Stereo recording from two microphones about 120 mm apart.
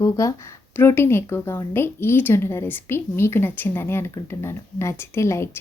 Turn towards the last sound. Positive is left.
turn(degrees=20)  # may be behind; listen again after turning